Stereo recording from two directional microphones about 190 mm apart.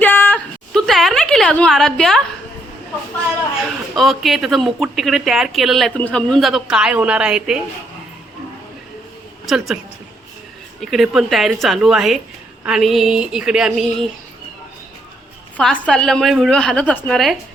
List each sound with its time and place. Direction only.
0.0 s a sound: 10° left (ahead or behind)
3.9 s speech: centre (ahead or behind)
10.8 s speech: centre (ahead or behind)
15.5 s speech: 5° left (ahead or behind)